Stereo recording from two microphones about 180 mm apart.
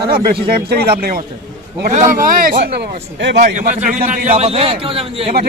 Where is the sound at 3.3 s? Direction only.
45° right (ahead or behind).